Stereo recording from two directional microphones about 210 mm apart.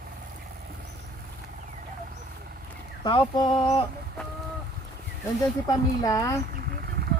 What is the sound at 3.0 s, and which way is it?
Speech, 20° left (ahead or behind).